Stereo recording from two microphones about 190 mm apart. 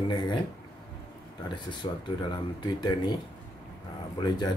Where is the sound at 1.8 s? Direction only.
30° left (ahead or behind).